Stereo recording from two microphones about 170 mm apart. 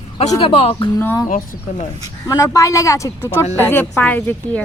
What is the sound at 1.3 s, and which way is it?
Speech, 50° left (ahead or behind).